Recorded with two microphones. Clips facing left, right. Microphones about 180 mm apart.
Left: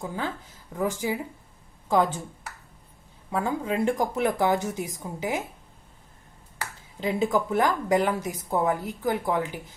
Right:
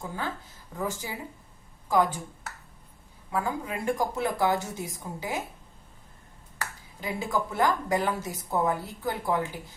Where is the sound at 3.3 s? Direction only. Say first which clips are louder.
Left 3 dB; 25° left (ahead or behind).